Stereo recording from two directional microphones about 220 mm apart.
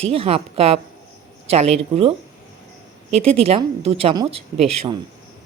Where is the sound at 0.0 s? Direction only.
25° right (ahead or behind).